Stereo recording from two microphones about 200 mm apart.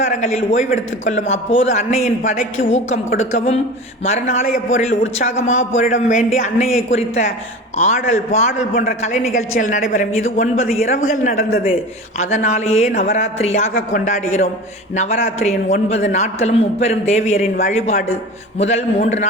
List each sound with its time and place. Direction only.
0.1 s a man's voice: 35° left (ahead or behind)